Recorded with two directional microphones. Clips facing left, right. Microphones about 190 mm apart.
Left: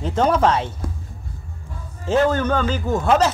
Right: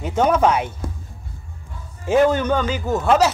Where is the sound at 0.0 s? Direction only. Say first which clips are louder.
Right 1 dB; 10° right (ahead or behind).